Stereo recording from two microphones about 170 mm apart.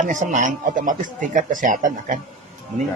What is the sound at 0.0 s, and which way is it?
Speech, 45° right (ahead or behind).